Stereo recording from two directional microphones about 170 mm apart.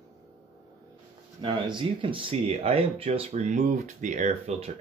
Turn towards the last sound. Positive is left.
turn(degrees=-40)  # may be behind; listen again after turning